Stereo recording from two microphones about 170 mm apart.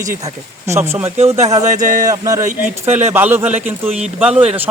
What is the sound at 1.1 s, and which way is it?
Speech, 40° right (ahead or behind).